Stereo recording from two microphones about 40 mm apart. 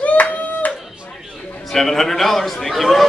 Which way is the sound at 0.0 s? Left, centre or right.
Left.